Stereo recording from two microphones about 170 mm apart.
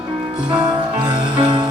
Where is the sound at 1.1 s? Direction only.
30° right (ahead or behind).